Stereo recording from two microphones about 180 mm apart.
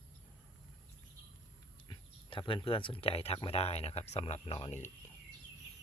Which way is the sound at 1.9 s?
25° left (ahead or behind).